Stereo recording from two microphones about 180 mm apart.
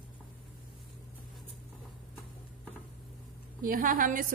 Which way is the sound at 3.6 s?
50° right (ahead or behind).